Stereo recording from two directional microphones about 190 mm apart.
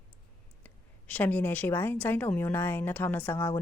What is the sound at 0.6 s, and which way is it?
A woman's voice, 10° left (ahead or behind).